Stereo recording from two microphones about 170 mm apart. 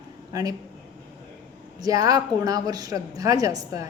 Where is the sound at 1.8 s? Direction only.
20° right (ahead or behind).